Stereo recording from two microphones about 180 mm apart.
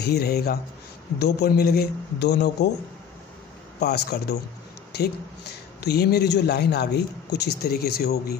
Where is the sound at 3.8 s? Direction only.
65° left (ahead or behind).